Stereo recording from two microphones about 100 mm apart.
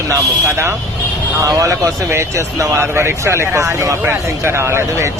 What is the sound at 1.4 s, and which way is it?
Speech, 35° right (ahead or behind).